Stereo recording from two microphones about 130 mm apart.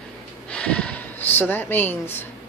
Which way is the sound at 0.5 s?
10° left (ahead or behind).